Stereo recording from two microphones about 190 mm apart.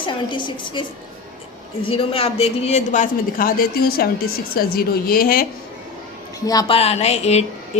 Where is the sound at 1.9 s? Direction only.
30° left (ahead or behind); by 5.5 s 50° left (ahead or behind).